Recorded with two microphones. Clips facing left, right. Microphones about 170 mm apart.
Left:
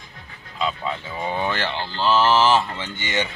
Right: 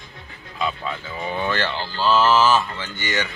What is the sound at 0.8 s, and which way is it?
Speech, 20° left (ahead or behind).